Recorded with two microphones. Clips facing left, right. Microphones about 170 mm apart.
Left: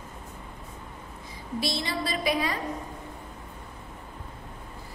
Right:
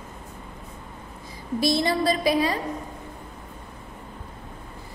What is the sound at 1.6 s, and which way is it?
A woman's voice, 45° right (ahead or behind).